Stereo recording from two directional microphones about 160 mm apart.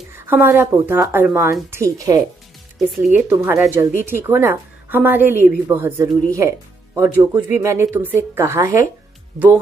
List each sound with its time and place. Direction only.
0.1 s a woman's voice: 15° right (ahead or behind)